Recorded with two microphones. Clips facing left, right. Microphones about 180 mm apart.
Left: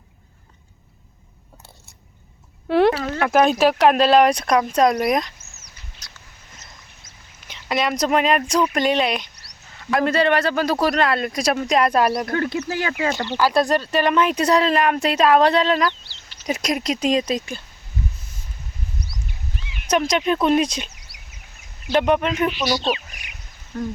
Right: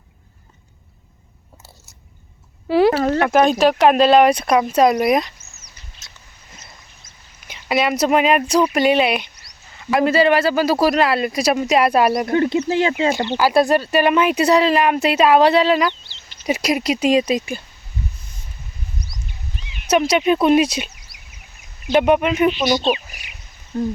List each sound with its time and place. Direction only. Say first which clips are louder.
2.6 s a sound: right 2 dB; centre (ahead or behind)
3.2 s speech: right 2 dB; centre (ahead or behind)
6.0 s a sound: left 1 dB; 25° right (ahead or behind)
7.4 s speech: right 3 dB; 5° right (ahead or behind)
12.2 s speech: right 6 dB; 20° right (ahead or behind)
13.1 s speech: right 3 dB; 10° right (ahead or behind)
15.9 s a sound: right 2 dB; 20° right (ahead or behind)
16.5 s speech: right 4 dB; 5° right (ahead or behind)
20.1 s speech: right 4 dB; 5° right (ahead or behind)
22.4 s speech: right 5 dB; 20° right (ahead or behind)